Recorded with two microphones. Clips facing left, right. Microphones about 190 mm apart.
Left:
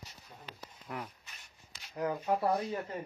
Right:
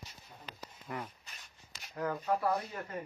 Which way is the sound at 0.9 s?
Centre (ahead or behind).